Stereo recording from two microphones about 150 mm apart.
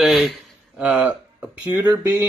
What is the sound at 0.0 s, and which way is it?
Speech, centre (ahead or behind).